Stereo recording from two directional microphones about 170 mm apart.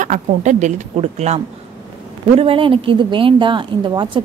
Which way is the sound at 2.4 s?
30° right (ahead or behind).